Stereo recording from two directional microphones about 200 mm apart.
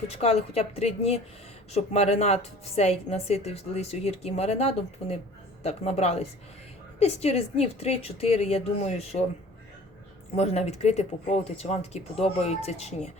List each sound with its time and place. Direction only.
0.1 s a woman's voice: 30° left (ahead or behind)
10.3 s a woman's voice: 35° left (ahead or behind)